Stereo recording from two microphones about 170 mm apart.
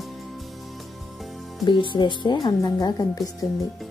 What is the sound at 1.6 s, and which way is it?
A woman's voice, 30° left (ahead or behind).